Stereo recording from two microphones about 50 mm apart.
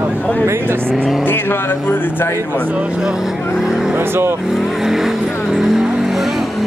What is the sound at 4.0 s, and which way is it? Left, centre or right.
Speech, right.